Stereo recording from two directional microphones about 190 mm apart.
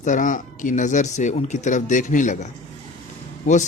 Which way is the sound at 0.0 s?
40° left (ahead or behind).